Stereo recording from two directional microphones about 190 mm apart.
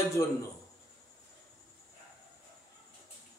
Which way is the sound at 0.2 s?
15° left (ahead or behind).